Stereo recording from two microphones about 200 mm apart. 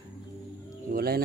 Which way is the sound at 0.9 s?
45° right (ahead or behind).